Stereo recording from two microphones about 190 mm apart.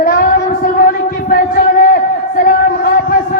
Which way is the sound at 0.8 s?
50° left (ahead or behind).